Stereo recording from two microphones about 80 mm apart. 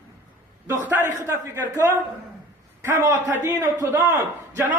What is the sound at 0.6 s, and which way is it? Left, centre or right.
Speech, right.